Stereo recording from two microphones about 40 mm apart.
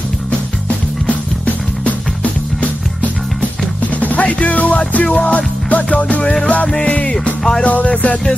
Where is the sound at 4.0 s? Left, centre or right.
Left.